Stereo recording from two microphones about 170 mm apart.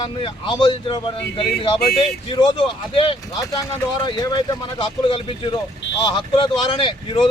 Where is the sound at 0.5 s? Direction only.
25° left (ahead or behind).